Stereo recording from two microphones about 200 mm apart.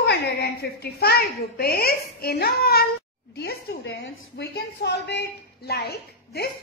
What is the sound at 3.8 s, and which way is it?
A woman's voice, 60° left (ahead or behind).